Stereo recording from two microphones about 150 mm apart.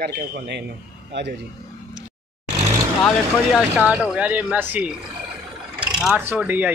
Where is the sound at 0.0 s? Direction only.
90° right.